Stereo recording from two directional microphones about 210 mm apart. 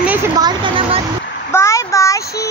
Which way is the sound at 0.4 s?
20° right (ahead or behind).